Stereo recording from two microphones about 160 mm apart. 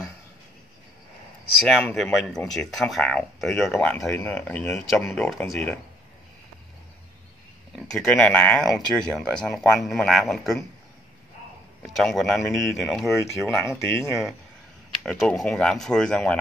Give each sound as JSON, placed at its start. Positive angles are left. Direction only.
{"t": 1.6, "sound": "speech", "side_deg": 0}
{"t": 7.7, "sound": "speech", "side_deg": 5}
{"t": 11.8, "sound": "speech", "side_deg": 0}
{"t": 13.7, "sound": "speech", "side_deg": 15}
{"t": 15.0, "sound": "speech", "side_deg": 0}